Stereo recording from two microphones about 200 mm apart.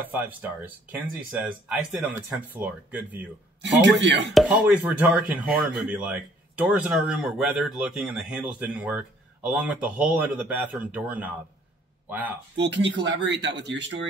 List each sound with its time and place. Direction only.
0.0 s speech: 10° right (ahead or behind)
3.6 s speech: 60° right (ahead or behind)
4.3 s speech: 5° right (ahead or behind)
12.5 s speech: 60° right (ahead or behind)